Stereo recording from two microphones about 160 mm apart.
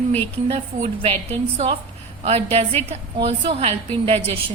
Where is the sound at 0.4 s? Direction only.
40° right (ahead or behind).